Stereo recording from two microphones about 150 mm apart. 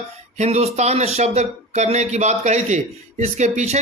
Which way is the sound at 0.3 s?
45° right (ahead or behind).